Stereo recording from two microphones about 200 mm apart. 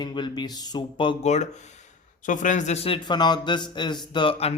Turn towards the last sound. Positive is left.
turn(degrees=30)  # may be behind; listen again after turning